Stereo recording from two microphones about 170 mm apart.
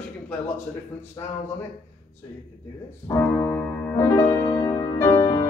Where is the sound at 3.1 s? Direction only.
15° left (ahead or behind).